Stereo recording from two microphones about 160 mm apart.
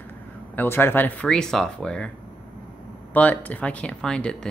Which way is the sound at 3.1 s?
10° left (ahead or behind).